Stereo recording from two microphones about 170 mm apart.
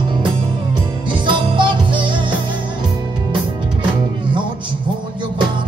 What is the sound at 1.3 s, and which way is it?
Music, 30° right (ahead or behind).